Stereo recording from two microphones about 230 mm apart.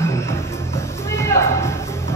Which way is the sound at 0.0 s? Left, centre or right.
Centre.